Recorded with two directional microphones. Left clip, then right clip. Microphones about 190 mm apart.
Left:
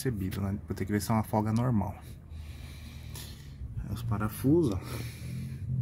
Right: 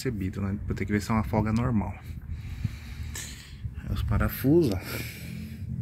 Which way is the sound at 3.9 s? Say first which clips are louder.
Right 4 dB; 10° left (ahead or behind).